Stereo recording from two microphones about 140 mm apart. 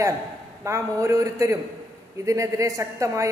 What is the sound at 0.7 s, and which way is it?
A woman's voice, 20° right (ahead or behind).